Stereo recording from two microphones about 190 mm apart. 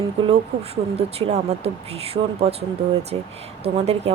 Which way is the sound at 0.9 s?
35° right (ahead or behind).